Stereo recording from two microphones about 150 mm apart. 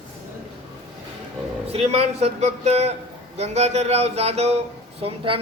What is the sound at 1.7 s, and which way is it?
A woman's voice, 40° right (ahead or behind).